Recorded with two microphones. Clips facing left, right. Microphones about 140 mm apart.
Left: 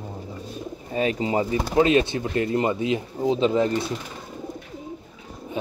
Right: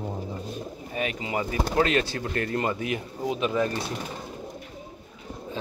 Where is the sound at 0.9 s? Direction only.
30° left (ahead or behind).